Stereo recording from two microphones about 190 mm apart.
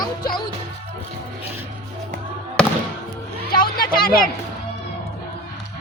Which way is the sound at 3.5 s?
50° left (ahead or behind).